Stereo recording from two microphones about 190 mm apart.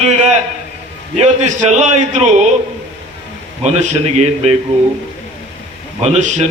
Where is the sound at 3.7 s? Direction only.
35° right (ahead or behind).